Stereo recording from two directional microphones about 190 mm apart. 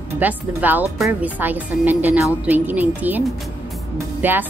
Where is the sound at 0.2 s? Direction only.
10° right (ahead or behind).